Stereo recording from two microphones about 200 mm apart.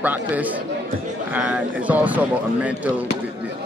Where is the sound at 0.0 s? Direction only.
10° right (ahead or behind).